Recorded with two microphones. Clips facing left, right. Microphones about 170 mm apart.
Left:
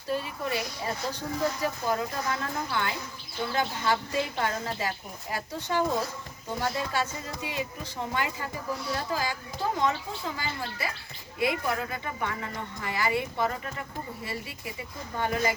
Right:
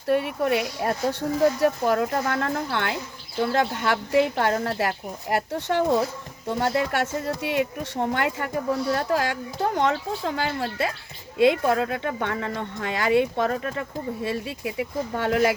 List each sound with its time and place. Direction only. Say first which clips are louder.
0.1 s speech: right 9 dB; 65° right (ahead or behind)